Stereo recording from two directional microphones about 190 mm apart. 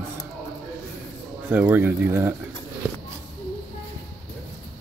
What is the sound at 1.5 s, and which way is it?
Speech, 10° right (ahead or behind).